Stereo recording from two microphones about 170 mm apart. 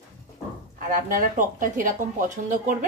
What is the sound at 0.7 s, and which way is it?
Speech, 55° right (ahead or behind).